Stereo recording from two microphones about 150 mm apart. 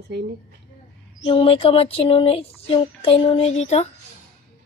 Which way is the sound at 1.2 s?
35° left (ahead or behind).